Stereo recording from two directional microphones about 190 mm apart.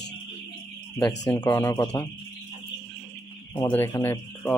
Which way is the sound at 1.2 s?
20° left (ahead or behind).